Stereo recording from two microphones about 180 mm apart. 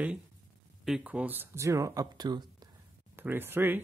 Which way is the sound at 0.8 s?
5° right (ahead or behind).